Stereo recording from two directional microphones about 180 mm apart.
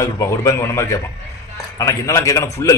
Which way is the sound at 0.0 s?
15° left (ahead or behind).